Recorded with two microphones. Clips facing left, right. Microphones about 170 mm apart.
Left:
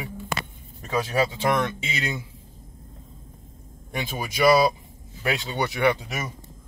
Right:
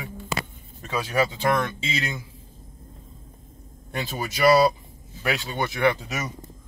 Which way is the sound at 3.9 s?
15° left (ahead or behind).